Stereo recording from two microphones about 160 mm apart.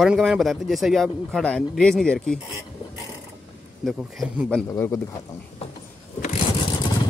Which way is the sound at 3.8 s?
Centre (ahead or behind).